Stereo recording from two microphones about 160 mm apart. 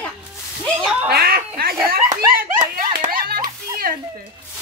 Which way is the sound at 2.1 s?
25° right (ahead or behind).